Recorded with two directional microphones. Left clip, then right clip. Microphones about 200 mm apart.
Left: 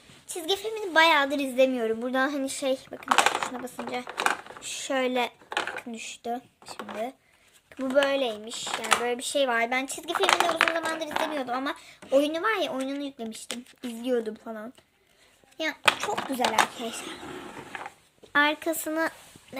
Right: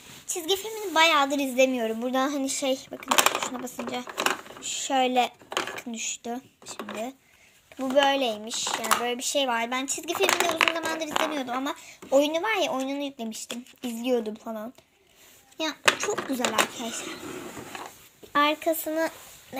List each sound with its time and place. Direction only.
0.3 s a woman's voice: 10° left (ahead or behind)
7.9 s speech: 10° right (ahead or behind)
9.5 s a woman's voice: 10° left (ahead or behind)
18.3 s a woman's voice: centre (ahead or behind)